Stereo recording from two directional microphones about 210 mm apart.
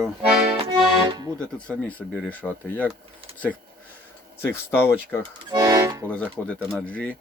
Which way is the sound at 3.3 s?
5° left (ahead or behind).